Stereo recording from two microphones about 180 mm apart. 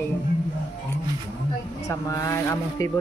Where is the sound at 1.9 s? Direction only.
15° left (ahead or behind).